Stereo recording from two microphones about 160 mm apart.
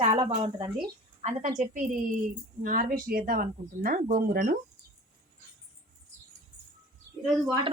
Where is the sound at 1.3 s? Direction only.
50° right (ahead or behind).